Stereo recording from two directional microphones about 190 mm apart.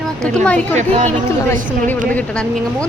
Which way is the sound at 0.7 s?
35° right (ahead or behind).